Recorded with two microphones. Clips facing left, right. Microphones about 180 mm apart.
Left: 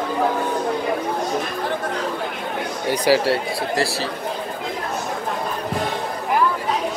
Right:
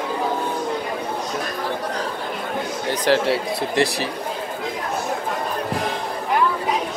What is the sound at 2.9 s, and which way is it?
Speech, 10° left (ahead or behind).